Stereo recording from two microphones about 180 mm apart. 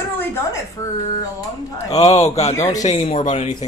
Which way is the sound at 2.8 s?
40° left (ahead or behind).